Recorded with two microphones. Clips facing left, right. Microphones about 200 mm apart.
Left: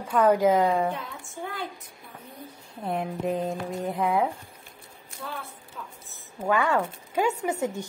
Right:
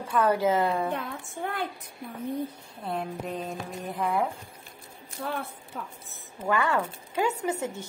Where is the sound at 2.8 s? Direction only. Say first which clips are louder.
Left 4 dB; 20° left (ahead or behind).